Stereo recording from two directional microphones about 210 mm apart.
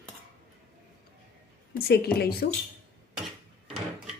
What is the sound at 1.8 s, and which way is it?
Speech, 50° left (ahead or behind).